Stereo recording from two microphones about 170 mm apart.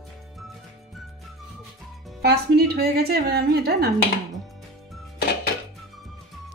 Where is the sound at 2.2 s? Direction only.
70° right (ahead or behind).